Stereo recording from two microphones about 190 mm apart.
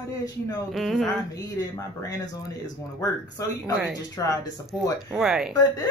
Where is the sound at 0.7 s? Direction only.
Centre (ahead or behind).